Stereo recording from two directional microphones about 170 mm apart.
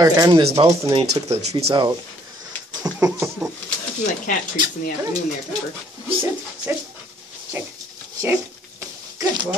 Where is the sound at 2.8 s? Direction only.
20° right (ahead or behind).